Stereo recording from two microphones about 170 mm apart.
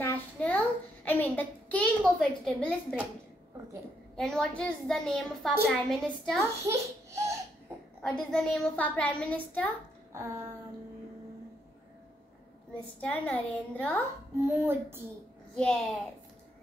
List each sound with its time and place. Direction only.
0.0 s a sound: 10° left (ahead or behind)
1.0 s a child's voice: 10° left (ahead or behind)
4.2 s a child's voice: 5° left (ahead or behind)
6.4 s a child's voice: 15° right (ahead or behind)
8.0 s a child's voice: 5° left (ahead or behind)
10.1 s speech: 15° right (ahead or behind)
13.0 s a child's voice: 5° left (ahead or behind)
14.3 s speech: 15° right (ahead or behind)
15.5 s a child's voice: 5° left (ahead or behind)